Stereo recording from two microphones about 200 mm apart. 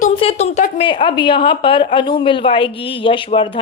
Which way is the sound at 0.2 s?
30° left (ahead or behind).